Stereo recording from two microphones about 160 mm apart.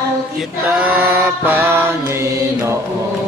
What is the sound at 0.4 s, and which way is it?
Mantra, 5° right (ahead or behind).